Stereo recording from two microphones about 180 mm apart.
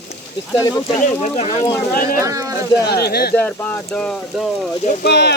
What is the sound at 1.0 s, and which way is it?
Speech, 40° left (ahead or behind).